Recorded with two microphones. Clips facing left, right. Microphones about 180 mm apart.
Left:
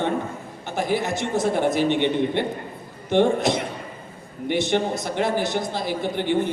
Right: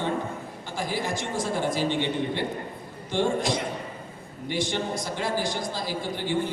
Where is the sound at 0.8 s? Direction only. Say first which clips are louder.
Left 6 dB; 20° left (ahead or behind).